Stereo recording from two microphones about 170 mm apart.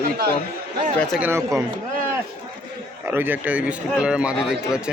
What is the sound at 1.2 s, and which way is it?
Speech, 15° right (ahead or behind).